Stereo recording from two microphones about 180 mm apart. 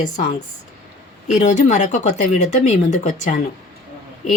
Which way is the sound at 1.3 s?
45° left (ahead or behind).